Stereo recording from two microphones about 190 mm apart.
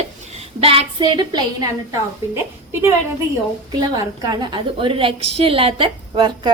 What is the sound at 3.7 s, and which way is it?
A woman's voice, 20° right (ahead or behind).